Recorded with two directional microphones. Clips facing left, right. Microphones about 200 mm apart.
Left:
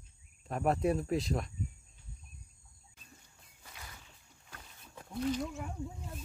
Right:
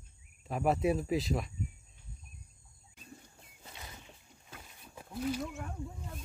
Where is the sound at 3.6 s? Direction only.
25° right (ahead or behind).